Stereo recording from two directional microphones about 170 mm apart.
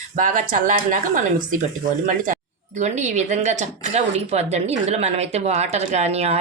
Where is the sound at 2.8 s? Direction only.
40° right (ahead or behind).